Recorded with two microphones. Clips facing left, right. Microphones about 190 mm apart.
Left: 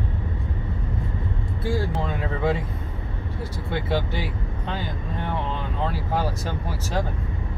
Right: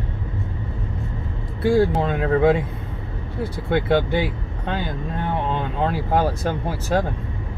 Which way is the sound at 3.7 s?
60° right (ahead or behind).